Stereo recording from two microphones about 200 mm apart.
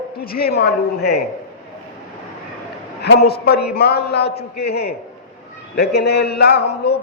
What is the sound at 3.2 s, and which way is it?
A man's voice, 50° left (ahead or behind).